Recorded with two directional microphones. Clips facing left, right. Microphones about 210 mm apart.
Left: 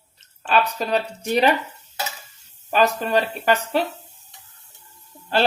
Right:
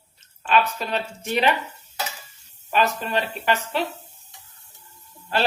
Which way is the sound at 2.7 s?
40° left (ahead or behind).